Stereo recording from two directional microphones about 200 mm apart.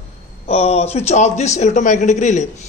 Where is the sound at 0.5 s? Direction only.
30° left (ahead or behind).